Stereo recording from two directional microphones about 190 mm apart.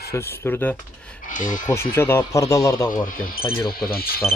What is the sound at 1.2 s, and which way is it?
Speech, 45° left (ahead or behind).